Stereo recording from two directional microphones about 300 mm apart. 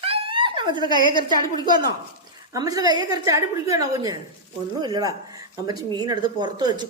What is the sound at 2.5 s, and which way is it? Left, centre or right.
Speech, centre.